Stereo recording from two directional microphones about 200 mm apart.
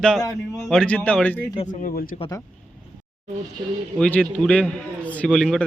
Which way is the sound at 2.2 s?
20° left (ahead or behind).